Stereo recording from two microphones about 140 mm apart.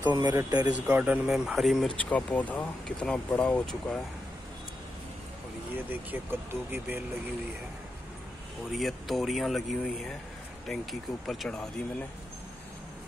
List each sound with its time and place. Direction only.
0.1 s a man's voice: 30° right (ahead or behind)
0.8 s speech: 10° right (ahead or behind); by 4.0 s 5° left (ahead or behind)
5.9 s speech: 15° right (ahead or behind)
8.7 s speech: centre (ahead or behind)